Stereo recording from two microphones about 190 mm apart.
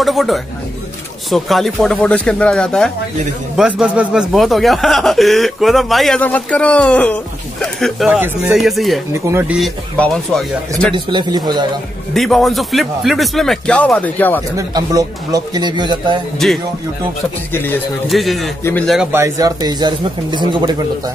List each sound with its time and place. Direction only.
0.0 s a man's voice: centre (ahead or behind)
9.1 s speech: 15° right (ahead or behind)
9.6 s a man's voice: 5° left (ahead or behind)
11.1 s speech: 25° right (ahead or behind)
12.1 s a man's voice: centre (ahead or behind)
14.6 s speech: 20° right (ahead or behind)
16.4 s a man's voice: centre (ahead or behind)
18.1 s a man's voice: centre (ahead or behind)
18.6 s speech: 10° left (ahead or behind)
19.1 s speech: 15° right (ahead or behind)